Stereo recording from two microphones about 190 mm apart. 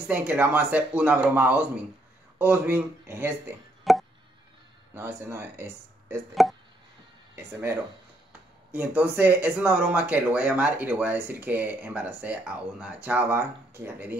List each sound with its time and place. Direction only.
0.1 s speech: 10° right (ahead or behind)
3.9 s chop: centre (ahead or behind)
4.9 s speech: 10° right (ahead or behind)
8.7 s speech: 10° right (ahead or behind)